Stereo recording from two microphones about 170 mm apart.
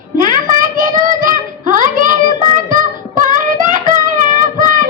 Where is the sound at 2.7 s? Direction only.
50° right (ahead or behind).